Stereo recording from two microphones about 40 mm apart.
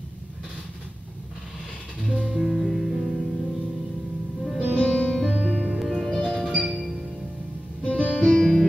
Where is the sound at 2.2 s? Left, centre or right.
Centre.